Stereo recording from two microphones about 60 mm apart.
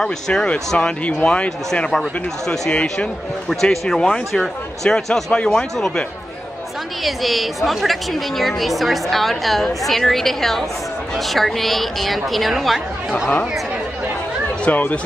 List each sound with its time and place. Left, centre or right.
0.0 s speech: centre
2.0 s speech: centre
7.1 s a woman's voice: centre
14.7 s speech: left